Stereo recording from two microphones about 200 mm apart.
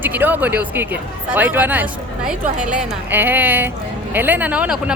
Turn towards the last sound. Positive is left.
turn(degrees=-5)  # may be behind; listen again after turning